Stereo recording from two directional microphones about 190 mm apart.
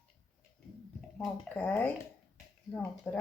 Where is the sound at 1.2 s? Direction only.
10° left (ahead or behind).